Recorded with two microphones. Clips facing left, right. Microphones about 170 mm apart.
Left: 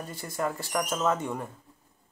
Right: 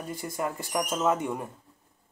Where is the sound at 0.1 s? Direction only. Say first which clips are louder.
Even; 15° right (ahead or behind).